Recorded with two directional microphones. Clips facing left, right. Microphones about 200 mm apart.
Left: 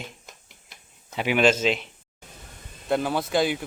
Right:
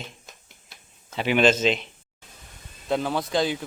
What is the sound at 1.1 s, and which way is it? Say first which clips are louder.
Speech: right 1 dB; 10° left (ahead or behind).